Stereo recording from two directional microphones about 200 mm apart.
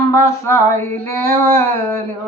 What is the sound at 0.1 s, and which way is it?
Speech, 15° left (ahead or behind).